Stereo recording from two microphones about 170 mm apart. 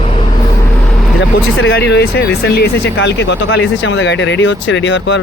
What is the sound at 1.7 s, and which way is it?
Speech, 75° left (ahead or behind).